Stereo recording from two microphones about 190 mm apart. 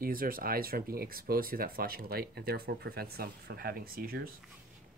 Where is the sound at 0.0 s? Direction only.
50° right (ahead or behind).